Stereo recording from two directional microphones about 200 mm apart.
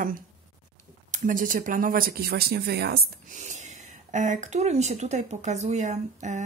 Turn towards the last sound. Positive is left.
turn(degrees=-35)  # may be behind; listen again after turning